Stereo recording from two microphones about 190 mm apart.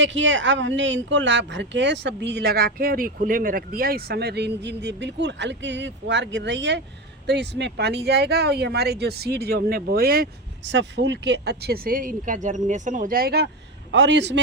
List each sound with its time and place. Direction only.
0.0 s speech: 75° right (ahead or behind); by 10.2 s 50° right (ahead or behind)
10.7 s speech: 70° right (ahead or behind)
13.9 s speech: 70° right (ahead or behind)